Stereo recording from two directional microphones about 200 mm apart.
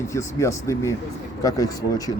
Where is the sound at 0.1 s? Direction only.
15° left (ahead or behind).